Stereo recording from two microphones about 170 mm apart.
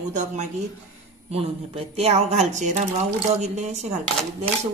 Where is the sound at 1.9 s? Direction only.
40° right (ahead or behind).